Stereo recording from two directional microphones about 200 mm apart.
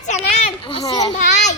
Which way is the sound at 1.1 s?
35° left (ahead or behind).